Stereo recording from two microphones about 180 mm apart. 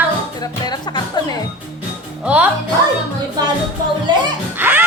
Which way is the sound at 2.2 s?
5° right (ahead or behind).